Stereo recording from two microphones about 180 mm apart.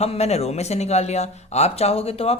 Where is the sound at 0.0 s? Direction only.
35° left (ahead or behind).